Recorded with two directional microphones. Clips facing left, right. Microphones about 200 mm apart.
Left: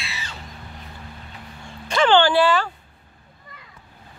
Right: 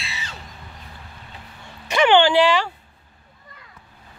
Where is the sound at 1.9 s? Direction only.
15° right (ahead or behind).